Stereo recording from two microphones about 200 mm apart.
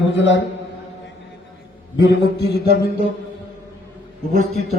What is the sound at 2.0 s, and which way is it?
Speech, 60° left (ahead or behind).